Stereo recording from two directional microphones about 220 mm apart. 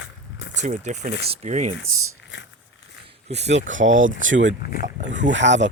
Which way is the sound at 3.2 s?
30° right (ahead or behind).